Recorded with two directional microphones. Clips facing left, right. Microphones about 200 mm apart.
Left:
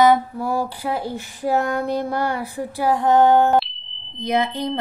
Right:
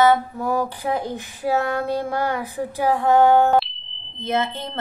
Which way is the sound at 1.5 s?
15° left (ahead or behind).